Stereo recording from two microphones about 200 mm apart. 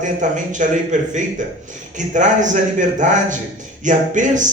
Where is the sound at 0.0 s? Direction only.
40° right (ahead or behind).